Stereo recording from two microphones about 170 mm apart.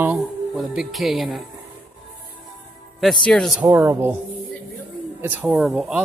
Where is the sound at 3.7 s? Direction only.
15° right (ahead or behind).